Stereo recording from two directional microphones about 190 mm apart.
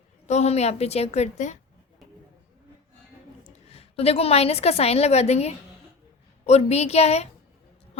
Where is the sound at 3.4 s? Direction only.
30° left (ahead or behind).